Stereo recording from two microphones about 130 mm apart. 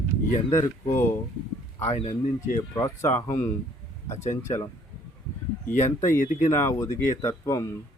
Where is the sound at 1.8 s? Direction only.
55° left (ahead or behind).